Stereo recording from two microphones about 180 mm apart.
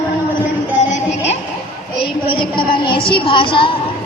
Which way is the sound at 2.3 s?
30° left (ahead or behind).